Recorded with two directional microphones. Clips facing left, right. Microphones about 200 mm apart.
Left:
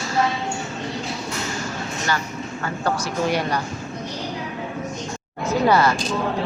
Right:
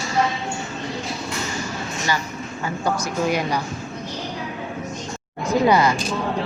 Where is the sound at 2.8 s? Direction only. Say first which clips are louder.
Even; 10° right (ahead or behind).